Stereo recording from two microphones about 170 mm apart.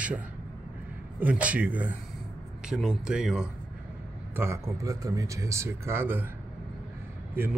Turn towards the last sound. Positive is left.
turn(degrees=-15)  # may be behind; listen again after turning